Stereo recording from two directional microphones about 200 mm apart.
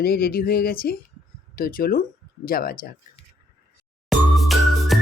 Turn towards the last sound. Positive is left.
turn(degrees=0)  # may be behind; listen again after turning